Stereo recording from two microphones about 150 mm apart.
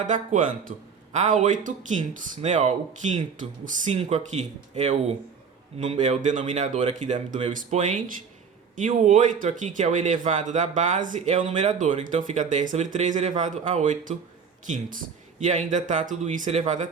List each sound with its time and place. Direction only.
0.0 s speech: 55° right (ahead or behind)
15.4 s speech: 55° right (ahead or behind)